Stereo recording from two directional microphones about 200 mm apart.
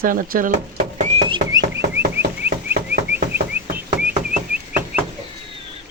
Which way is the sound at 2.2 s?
50° right (ahead or behind).